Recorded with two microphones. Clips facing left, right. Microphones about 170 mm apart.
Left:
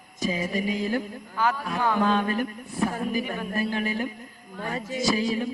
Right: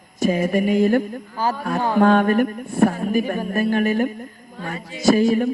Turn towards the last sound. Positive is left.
turn(degrees=-50)  # may be behind; listen again after turning